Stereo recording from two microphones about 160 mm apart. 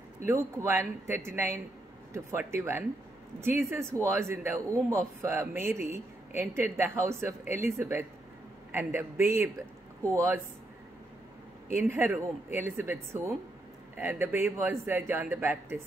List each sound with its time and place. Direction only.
0.2 s speech: 15° right (ahead or behind)
11.9 s speech: 15° right (ahead or behind)